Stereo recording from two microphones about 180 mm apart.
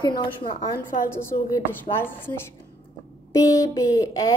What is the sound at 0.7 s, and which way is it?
A woman's voice, 15° left (ahead or behind).